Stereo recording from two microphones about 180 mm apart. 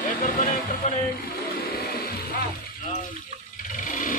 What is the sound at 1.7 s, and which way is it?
Vehicle, 60° left (ahead or behind).